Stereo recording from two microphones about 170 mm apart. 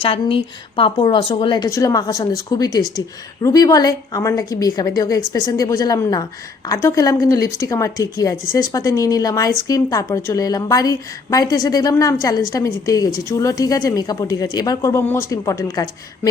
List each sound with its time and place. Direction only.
0.0 s a woman's voice: 30° left (ahead or behind)